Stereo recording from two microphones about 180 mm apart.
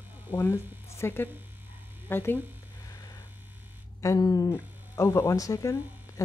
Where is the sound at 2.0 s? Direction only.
10° left (ahead or behind).